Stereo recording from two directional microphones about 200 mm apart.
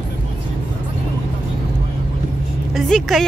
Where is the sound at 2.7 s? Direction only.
Centre (ahead or behind).